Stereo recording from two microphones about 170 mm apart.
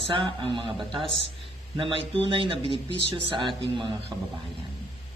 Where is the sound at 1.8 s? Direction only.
30° right (ahead or behind).